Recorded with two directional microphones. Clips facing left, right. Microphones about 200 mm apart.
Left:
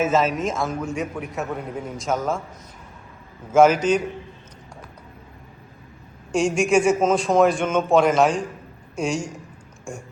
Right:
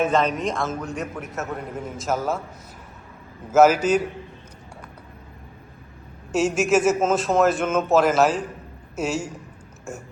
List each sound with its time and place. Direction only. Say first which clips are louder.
0.0 s a man's voice: left 1 dB; 5° left (ahead or behind)
3.5 s a man's voice: even; 5° right (ahead or behind)
6.3 s a man's voice: left 1 dB; 5° right (ahead or behind)